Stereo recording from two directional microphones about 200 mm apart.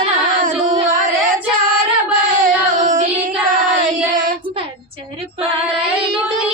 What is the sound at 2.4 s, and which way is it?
Child singing, 40° right (ahead or behind).